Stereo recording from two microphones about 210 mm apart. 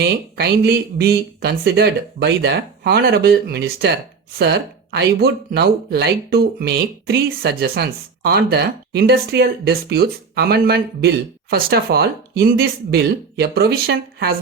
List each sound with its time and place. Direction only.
0.0 s speech: 50° right (ahead or behind)